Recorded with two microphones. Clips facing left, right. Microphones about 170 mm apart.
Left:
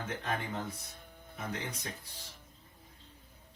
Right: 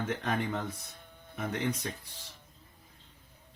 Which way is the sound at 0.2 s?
60° right (ahead or behind).